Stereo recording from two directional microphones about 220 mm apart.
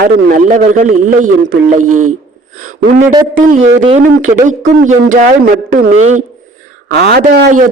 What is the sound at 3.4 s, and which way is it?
A man's voice, 35° right (ahead or behind).